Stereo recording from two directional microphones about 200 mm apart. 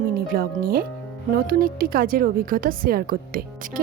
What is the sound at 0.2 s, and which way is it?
Speech, 45° right (ahead or behind).